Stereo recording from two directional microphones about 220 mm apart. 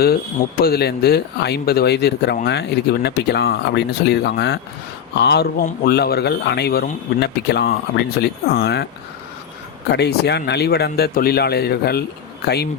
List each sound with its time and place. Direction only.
0.6 s speech: 45° left (ahead or behind)
9.9 s speech: 50° left (ahead or behind)